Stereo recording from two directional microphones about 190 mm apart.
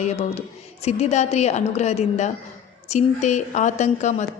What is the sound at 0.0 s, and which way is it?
Speech, 35° left (ahead or behind).